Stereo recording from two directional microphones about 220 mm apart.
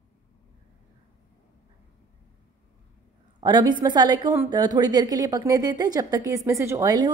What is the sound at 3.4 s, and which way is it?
A woman's voice, 20° right (ahead or behind).